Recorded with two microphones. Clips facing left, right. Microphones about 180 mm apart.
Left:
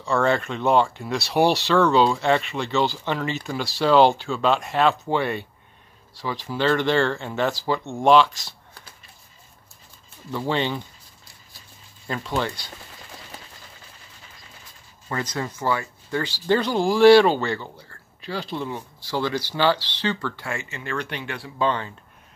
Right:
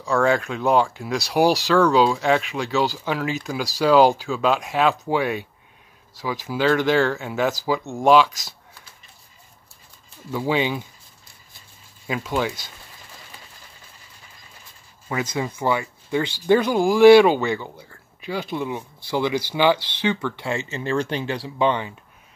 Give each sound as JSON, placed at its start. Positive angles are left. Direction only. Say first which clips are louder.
{"t": 0.0, "sound": "speech", "louder": "right 2 dB", "side_deg": 0}
{"t": 10.3, "sound": "speech", "louder": "right 2 dB", "side_deg": -10}
{"t": 12.1, "sound": "speech", "louder": "right 2 dB", "side_deg": -10}
{"t": 15.0, "sound": "speech", "louder": "right 3 dB", "side_deg": -10}
{"t": 21.5, "sound": "speech", "louder": "right 2 dB", "side_deg": -15}